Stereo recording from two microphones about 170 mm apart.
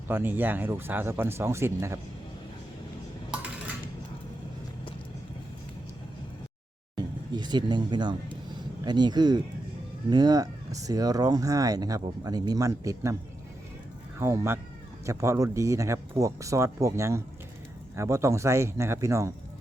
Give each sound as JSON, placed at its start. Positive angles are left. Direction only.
{"t": 0.1, "sound": "speech", "side_deg": -10}
{"t": 6.9, "sound": "speech", "side_deg": -25}
{"t": 14.2, "sound": "speech", "side_deg": -15}